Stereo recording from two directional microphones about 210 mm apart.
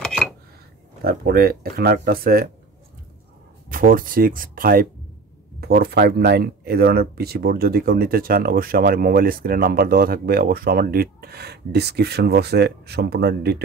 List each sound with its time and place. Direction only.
0.0 s dishes: centre (ahead or behind)
1.0 s speech: 45° right (ahead or behind)
3.6 s speech: 45° right (ahead or behind)